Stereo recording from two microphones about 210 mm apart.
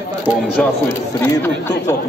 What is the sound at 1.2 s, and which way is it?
Speech, 10° left (ahead or behind).